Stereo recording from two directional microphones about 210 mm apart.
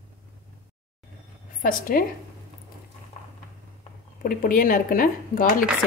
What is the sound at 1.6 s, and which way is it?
Speech, 40° left (ahead or behind).